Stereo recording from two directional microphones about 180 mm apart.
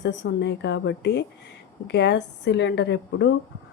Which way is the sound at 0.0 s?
75° left (ahead or behind).